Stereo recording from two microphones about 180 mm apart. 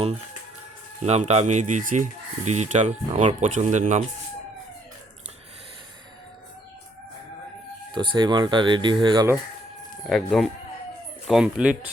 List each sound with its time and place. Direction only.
1.0 s speech: 35° right (ahead or behind)
7.9 s speech: 25° right (ahead or behind)
10.1 s speech: centre (ahead or behind)